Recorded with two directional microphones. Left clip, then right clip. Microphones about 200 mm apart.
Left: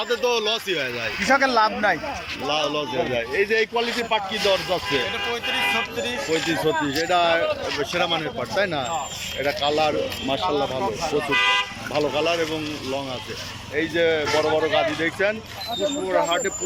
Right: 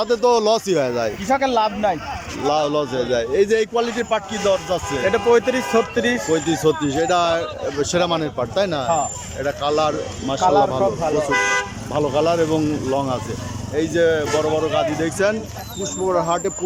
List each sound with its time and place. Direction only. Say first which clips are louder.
0.0 s speech: right 6 dB; 25° right (ahead or behind)
1.3 s speech: even; 10° right (ahead or behind)
2.5 s speech: right 5 dB; 20° right (ahead or behind)
5.1 s speech: right 8 dB; 65° right (ahead or behind)
6.3 s speech: right 1 dB; 15° right (ahead or behind)
11.3 s speech: left 2 dB; 45° right (ahead or behind)
11.9 s speech: right 4 dB; 15° right (ahead or behind)